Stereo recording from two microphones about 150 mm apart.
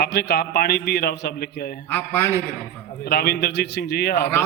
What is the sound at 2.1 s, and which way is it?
Speech, 20° left (ahead or behind).